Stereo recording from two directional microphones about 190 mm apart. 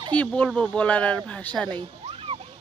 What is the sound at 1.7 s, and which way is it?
Cat, 30° right (ahead or behind).